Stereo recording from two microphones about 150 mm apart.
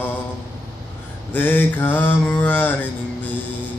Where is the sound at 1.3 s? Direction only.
10° left (ahead or behind).